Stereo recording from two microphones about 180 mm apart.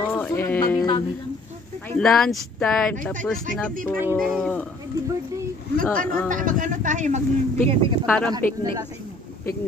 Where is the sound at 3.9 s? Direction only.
5° right (ahead or behind).